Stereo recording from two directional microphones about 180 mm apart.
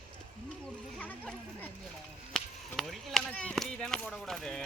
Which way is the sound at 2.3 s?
Centre (ahead or behind).